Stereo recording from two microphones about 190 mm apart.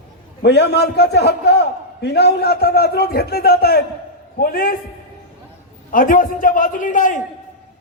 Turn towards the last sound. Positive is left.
turn(degrees=45)  # may be behind; listen again after turning